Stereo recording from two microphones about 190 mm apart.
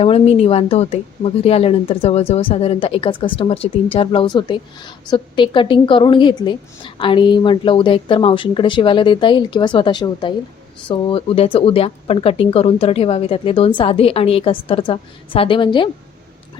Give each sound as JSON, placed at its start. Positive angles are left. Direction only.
{"t": 0.0, "sound": "a woman's voice", "side_deg": 30}